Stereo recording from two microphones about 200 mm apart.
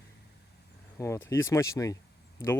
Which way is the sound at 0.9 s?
15° left (ahead or behind).